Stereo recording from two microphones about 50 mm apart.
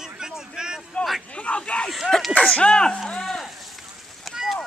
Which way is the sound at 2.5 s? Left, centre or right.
Centre.